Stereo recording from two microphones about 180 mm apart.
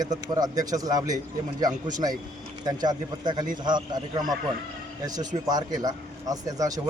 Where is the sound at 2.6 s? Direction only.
20° right (ahead or behind).